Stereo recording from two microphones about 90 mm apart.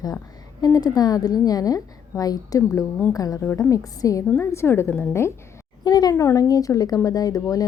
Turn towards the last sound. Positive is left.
turn(degrees=40)  # may be behind; listen again after turning